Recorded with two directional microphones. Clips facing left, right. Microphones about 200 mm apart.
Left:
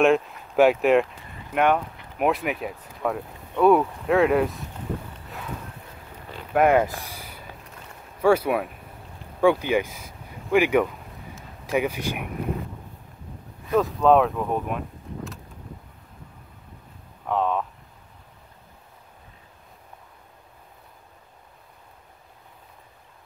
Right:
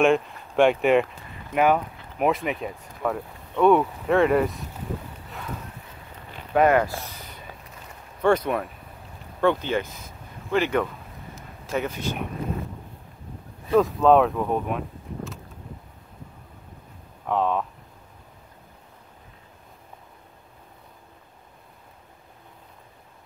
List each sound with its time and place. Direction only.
0.0 s speech: centre (ahead or behind)
6.5 s speech: 10° left (ahead or behind)
6.8 s a sound: 15° left (ahead or behind)
8.2 s speech: 10° left (ahead or behind)
13.7 s speech: centre (ahead or behind)
17.3 s speech: centre (ahead or behind)